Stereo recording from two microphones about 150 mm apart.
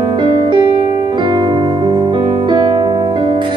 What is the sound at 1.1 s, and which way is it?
Keyboard, 25° right (ahead or behind).